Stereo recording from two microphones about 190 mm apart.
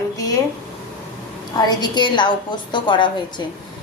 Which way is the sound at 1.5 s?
25° left (ahead or behind).